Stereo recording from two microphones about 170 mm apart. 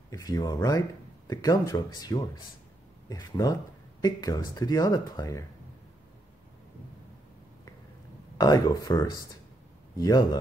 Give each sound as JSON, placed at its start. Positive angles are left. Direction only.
{"t": 0.1, "sound": "speech", "side_deg": 20}
{"t": 8.4, "sound": "speech", "side_deg": 25}